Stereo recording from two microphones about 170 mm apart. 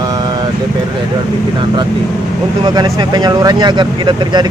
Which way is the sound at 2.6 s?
20° right (ahead or behind).